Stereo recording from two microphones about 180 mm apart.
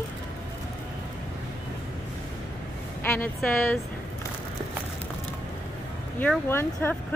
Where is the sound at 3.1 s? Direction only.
10° left (ahead or behind).